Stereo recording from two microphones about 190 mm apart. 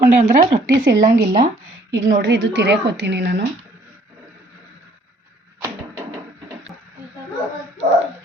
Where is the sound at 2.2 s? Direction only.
70° right (ahead or behind).